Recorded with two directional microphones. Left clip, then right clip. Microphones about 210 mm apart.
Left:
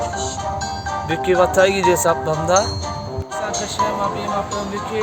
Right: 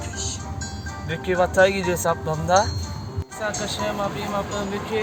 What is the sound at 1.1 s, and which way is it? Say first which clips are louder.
Speech: left 4 dB; 40° left (ahead or behind).